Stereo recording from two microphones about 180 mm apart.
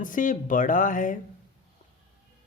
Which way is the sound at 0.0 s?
45° left (ahead or behind).